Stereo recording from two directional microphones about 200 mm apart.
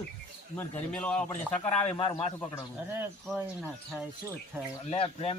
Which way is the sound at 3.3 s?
Centre (ahead or behind).